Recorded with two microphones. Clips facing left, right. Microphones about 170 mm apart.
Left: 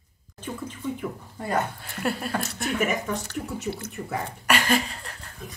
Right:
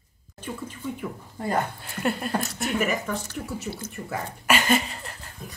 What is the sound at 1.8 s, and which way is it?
A woman's voice, centre (ahead or behind).